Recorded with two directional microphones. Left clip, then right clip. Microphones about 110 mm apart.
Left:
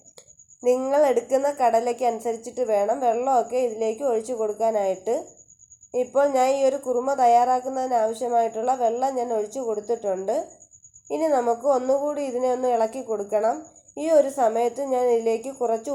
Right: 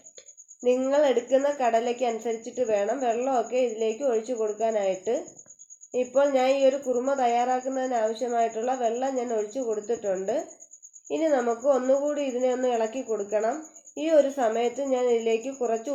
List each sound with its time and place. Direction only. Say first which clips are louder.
0.8 s a woman's voice: left 2 dB; 35° left (ahead or behind)